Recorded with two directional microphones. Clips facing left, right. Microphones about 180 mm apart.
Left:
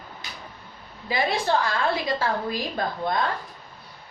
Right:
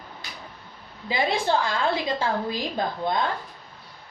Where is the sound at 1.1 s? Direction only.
25° right (ahead or behind).